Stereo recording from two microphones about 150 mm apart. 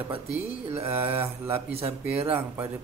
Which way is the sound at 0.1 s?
45° right (ahead or behind).